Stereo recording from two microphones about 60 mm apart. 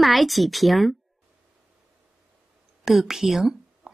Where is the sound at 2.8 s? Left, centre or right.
Centre.